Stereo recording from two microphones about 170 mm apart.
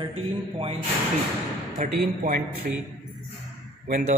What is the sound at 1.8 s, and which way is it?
Speech, 55° right (ahead or behind).